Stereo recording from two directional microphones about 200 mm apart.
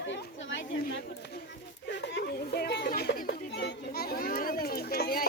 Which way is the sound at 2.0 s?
55° left (ahead or behind).